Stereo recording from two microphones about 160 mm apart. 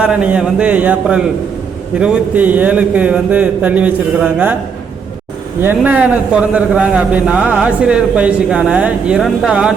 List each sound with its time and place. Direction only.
0.0 s a man's voice: 5° right (ahead or behind)
5.6 s a man's voice: 10° right (ahead or behind)